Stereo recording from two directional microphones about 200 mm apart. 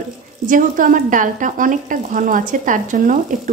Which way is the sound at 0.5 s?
40° right (ahead or behind).